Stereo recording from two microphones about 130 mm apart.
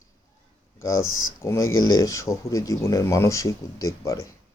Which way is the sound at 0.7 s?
20° left (ahead or behind).